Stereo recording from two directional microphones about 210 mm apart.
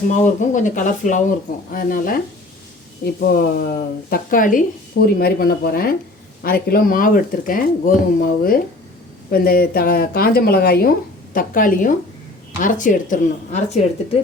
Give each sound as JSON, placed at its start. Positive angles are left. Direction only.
{"t": 0.1, "sound": "speech", "side_deg": 35}